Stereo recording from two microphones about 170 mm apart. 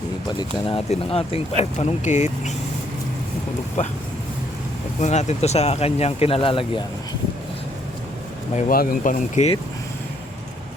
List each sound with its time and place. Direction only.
0.3 s speech: 30° left (ahead or behind)
3.8 s speech: 45° left (ahead or behind)
4.9 s speech: 40° left (ahead or behind)
8.7 s speech: 55° left (ahead or behind)